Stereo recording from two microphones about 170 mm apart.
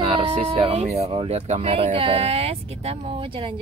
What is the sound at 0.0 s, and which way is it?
Speech, 35° right (ahead or behind).